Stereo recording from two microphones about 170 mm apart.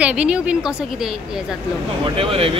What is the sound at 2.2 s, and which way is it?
Speech, 35° right (ahead or behind).